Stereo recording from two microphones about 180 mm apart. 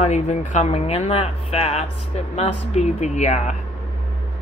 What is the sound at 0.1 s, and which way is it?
Speech, 40° left (ahead or behind).